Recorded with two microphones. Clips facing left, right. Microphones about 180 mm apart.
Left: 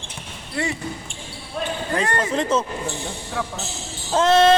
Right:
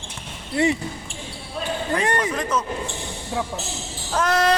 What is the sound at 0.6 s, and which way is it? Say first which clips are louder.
Speech: right 6 dB; 20° right (ahead or behind).